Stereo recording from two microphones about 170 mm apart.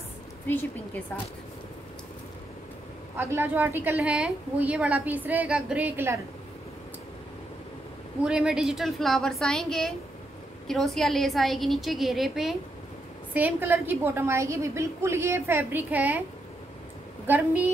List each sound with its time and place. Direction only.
3.2 s a woman's voice: 10° right (ahead or behind)
8.2 s a woman's voice: 5° right (ahead or behind)
17.3 s a woman's voice: 10° right (ahead or behind)